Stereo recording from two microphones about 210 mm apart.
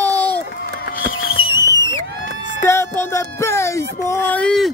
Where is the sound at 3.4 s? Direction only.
15° left (ahead or behind).